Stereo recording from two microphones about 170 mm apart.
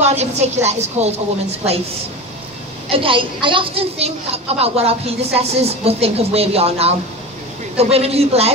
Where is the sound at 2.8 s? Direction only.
30° right (ahead or behind).